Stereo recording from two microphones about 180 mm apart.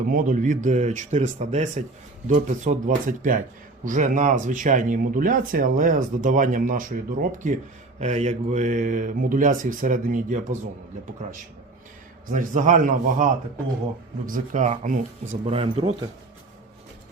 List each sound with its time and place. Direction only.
0.1 s speech: 50° right (ahead or behind)
15.3 s speech: 35° right (ahead or behind)